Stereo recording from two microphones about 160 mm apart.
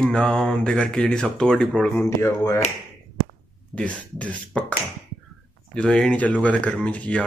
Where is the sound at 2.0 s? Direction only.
20° left (ahead or behind).